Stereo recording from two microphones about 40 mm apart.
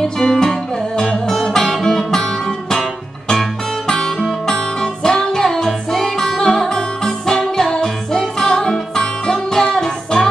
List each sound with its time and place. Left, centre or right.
0.2 s music: centre